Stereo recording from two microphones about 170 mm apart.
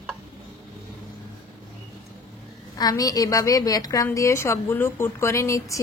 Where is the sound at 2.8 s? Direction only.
20° left (ahead or behind).